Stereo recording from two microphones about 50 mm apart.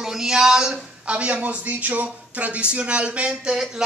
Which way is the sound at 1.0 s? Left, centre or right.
Right.